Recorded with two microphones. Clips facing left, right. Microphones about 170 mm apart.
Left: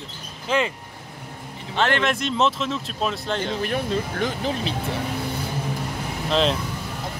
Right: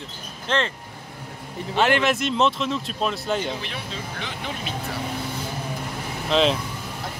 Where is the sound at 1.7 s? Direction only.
5° right (ahead or behind).